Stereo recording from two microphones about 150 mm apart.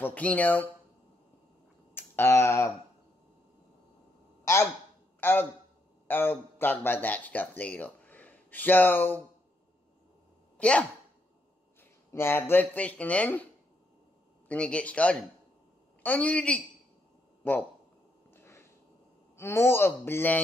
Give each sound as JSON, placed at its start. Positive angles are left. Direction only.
{"t": 0.0, "sound": "speech", "side_deg": 10}
{"t": 2.0, "sound": "speech", "side_deg": 15}
{"t": 5.2, "sound": "a man's voice", "side_deg": 15}
{"t": 10.6, "sound": "speech", "side_deg": 5}
{"t": 12.1, "sound": "speech", "side_deg": 15}
{"t": 14.5, "sound": "speech", "side_deg": 10}
{"t": 17.4, "sound": "a sound", "side_deg": 10}
{"t": 19.3, "sound": "speech", "side_deg": 15}